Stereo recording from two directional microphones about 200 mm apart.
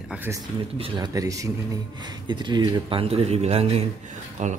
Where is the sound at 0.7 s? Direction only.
25° right (ahead or behind).